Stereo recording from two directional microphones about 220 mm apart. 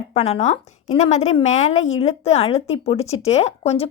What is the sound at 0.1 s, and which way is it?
A woman's voice, 30° left (ahead or behind).